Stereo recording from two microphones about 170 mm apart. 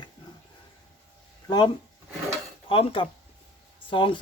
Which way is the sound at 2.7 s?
30° left (ahead or behind).